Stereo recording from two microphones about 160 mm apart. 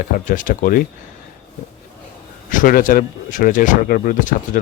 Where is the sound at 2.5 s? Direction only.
55° left (ahead or behind).